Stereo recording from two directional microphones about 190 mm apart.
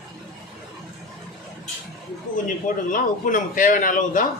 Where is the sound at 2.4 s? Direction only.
45° left (ahead or behind).